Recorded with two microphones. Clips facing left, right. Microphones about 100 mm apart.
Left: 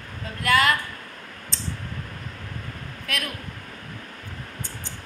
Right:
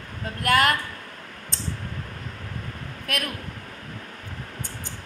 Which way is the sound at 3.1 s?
50° right (ahead or behind).